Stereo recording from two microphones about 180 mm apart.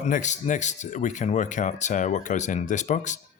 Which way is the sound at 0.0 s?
40° left (ahead or behind).